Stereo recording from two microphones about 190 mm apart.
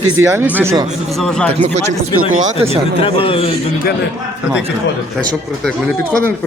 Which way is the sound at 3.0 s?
30° left (ahead or behind).